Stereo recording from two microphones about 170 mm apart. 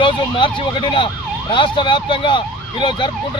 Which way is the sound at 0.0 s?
30° left (ahead or behind).